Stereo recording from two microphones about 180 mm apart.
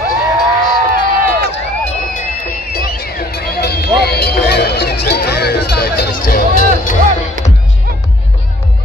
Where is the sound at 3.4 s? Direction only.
65° left (ahead or behind).